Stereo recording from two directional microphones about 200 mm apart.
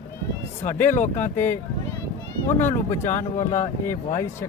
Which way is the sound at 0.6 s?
40° left (ahead or behind).